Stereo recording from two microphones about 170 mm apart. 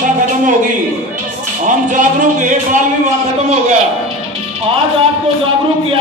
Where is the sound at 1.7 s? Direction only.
45° right (ahead or behind).